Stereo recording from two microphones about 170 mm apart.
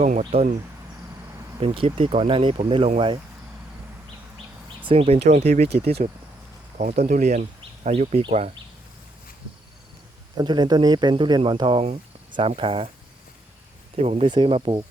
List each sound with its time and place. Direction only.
0.0 s speech: 40° right (ahead or behind)
1.6 s speech: 35° right (ahead or behind)
4.9 s speech: 35° right (ahead or behind)
10.3 s speech: 25° right (ahead or behind)
13.9 s speech: 35° right (ahead or behind)